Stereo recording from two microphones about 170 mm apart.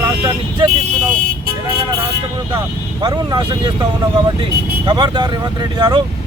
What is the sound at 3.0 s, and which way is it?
Speech, 25° right (ahead or behind).